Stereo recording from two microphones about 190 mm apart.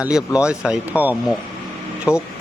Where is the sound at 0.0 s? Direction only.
5° right (ahead or behind).